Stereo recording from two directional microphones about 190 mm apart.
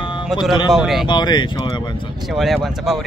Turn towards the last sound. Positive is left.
turn(degrees=0)  # may be behind; listen again after turning